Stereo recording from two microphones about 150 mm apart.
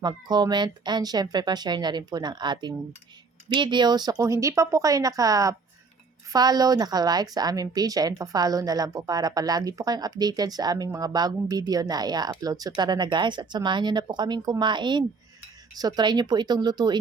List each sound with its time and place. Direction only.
0.0 s a woman's voice: 30° right (ahead or behind)